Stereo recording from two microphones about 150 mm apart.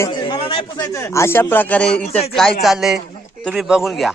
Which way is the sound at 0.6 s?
25° left (ahead or behind).